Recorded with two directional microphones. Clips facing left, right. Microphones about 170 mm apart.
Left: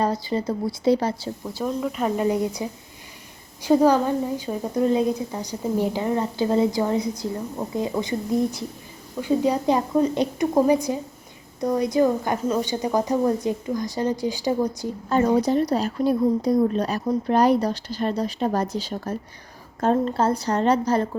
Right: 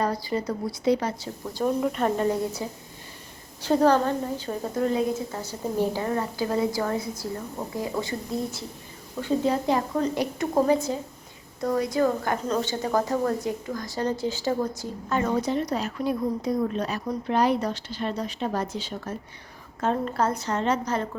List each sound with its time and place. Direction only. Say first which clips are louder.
0.0 s speech: left 3 dB; 25° left (ahead or behind)
1.6 s a woman's voice: right 1 dB; centre (ahead or behind); by 14.8 s 15° left (ahead or behind)
15.4 s speech: left 5 dB; 35° left (ahead or behind)